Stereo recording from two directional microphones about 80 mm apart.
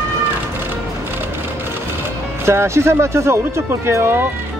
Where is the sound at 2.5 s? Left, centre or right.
Right.